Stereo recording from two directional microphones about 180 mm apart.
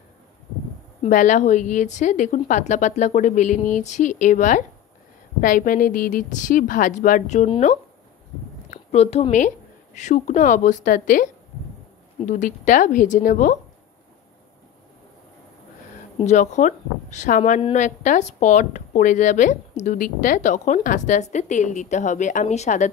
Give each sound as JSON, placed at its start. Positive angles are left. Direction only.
{"t": 1.0, "sound": "a woman's voice", "side_deg": 45}
{"t": 12.3, "sound": "a woman's voice", "side_deg": 45}
{"t": 16.3, "sound": "a woman's voice", "side_deg": 40}